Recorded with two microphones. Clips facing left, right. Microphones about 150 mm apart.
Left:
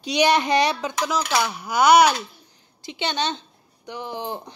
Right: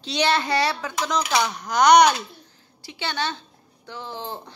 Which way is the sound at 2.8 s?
20° left (ahead or behind).